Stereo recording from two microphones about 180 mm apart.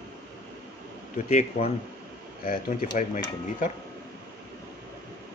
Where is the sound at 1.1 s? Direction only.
40° left (ahead or behind).